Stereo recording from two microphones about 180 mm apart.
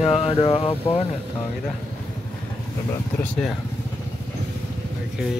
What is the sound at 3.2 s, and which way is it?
Mantra, 5° left (ahead or behind).